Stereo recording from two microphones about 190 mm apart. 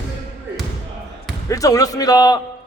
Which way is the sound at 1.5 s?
20° left (ahead or behind).